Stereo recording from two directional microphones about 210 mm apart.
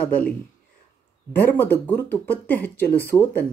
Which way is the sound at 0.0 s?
10° left (ahead or behind).